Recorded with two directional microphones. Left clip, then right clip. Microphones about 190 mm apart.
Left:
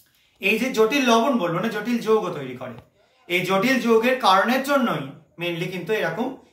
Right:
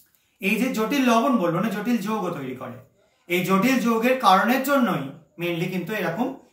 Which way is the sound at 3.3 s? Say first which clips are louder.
Left 1 dB; 20° right (ahead or behind).